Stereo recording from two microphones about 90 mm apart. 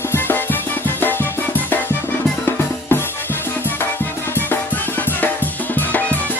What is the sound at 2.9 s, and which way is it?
Music, 25° left (ahead or behind).